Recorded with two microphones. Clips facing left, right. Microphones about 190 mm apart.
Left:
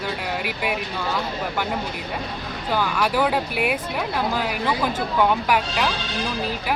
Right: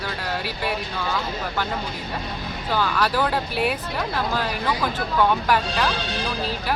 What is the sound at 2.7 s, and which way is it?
Speech, 10° left (ahead or behind).